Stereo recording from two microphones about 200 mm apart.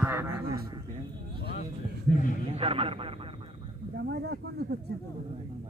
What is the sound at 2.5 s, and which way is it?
Speech, 30° right (ahead or behind).